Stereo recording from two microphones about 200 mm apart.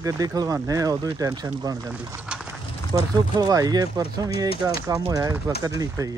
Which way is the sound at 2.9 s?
20° right (ahead or behind).